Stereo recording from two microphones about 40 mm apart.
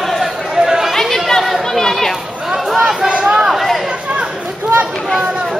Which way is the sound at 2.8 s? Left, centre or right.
Right.